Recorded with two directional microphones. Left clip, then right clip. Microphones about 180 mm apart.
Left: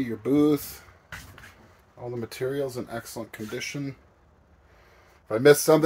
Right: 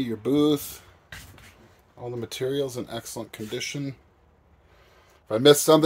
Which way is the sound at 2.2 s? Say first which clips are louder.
Right 2 dB; 30° right (ahead or behind).